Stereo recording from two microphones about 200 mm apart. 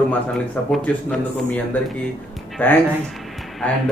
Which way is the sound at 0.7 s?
5° left (ahead or behind).